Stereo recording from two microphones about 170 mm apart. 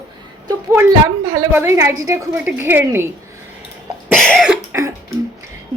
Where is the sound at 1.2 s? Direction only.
20° right (ahead or behind).